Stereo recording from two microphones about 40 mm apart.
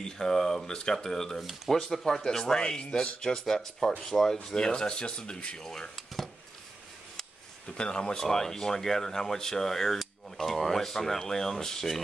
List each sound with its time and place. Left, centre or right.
0.0 s speech: centre
4.6 s speech: left
5.6 s speech: centre
7.6 s speech: left